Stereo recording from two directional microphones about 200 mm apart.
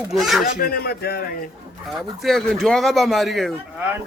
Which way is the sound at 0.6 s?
50° left (ahead or behind).